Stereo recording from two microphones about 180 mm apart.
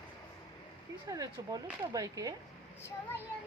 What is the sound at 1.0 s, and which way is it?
Speech, 20° right (ahead or behind).